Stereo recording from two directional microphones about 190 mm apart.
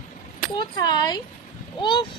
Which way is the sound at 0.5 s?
20° left (ahead or behind).